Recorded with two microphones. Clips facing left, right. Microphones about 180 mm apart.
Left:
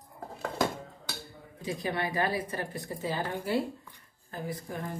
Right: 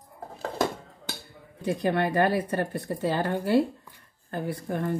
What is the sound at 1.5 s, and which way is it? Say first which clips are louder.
Speech: right 7 dB; 60° right (ahead or behind).